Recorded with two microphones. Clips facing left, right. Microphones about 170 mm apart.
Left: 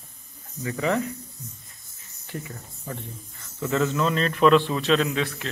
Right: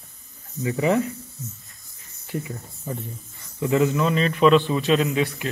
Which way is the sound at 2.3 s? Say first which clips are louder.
Right 5 dB; 15° right (ahead or behind).